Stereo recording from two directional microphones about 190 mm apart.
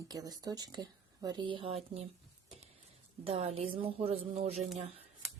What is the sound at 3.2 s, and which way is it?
A woman's voice, 30° right (ahead or behind).